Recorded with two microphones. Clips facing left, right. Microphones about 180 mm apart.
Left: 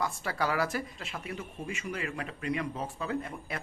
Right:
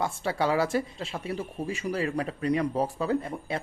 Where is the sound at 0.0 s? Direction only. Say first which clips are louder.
Right 4 dB; 25° right (ahead or behind).